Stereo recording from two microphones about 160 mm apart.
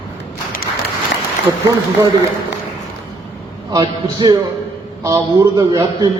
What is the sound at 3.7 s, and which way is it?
A man's voice, 25° right (ahead or behind).